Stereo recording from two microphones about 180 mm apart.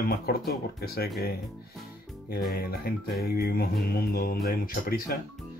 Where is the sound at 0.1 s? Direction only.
60° left (ahead or behind).